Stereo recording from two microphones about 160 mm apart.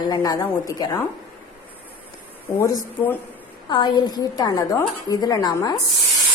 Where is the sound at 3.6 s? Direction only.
25° left (ahead or behind).